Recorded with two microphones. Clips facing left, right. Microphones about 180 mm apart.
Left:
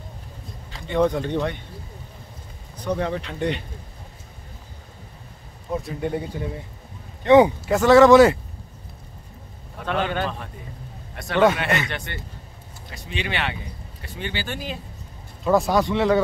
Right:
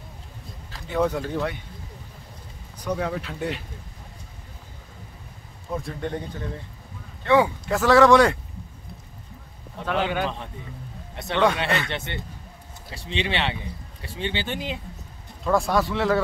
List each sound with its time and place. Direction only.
0.7 s speech: centre (ahead or behind)
2.8 s speech: 5° right (ahead or behind)
5.7 s speech: 5° left (ahead or behind); by 7.5 s 20° left (ahead or behind)
7.6 s speech: centre (ahead or behind)
9.8 s speech: 10° right (ahead or behind)
15.4 s speech: centre (ahead or behind)